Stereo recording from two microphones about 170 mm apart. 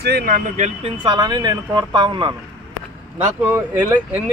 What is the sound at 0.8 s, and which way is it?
Speech, 25° right (ahead or behind).